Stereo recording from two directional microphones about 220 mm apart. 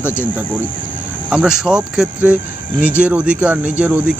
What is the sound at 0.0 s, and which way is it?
Speech, 10° left (ahead or behind).